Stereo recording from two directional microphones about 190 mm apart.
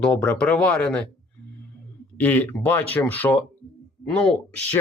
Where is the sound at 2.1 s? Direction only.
10° left (ahead or behind).